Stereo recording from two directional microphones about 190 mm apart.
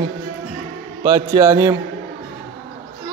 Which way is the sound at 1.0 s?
20° right (ahead or behind).